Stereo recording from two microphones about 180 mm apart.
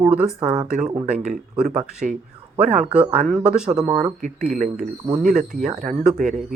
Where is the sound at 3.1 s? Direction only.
40° right (ahead or behind).